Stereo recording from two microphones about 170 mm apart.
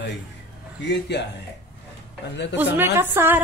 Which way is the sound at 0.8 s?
90° left.